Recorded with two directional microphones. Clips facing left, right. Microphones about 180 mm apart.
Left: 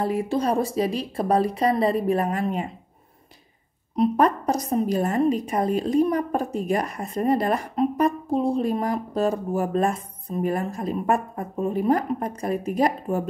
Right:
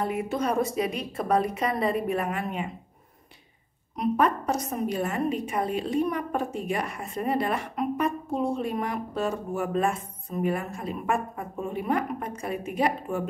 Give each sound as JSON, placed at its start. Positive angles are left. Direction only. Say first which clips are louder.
{"t": 0.0, "sound": "a woman's voice", "louder": "left 4 dB", "side_deg": 30}
{"t": 3.9, "sound": "a woman's voice", "louder": "left 4 dB", "side_deg": 35}